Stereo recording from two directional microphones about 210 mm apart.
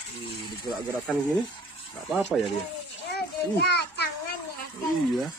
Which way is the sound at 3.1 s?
50° left (ahead or behind).